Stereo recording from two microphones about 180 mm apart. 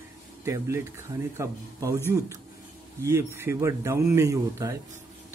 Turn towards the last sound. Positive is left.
turn(degrees=-15)  # may be behind; listen again after turning